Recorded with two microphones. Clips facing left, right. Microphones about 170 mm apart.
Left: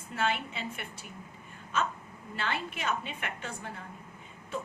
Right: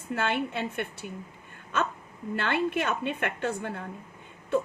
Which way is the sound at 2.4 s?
60° right (ahead or behind).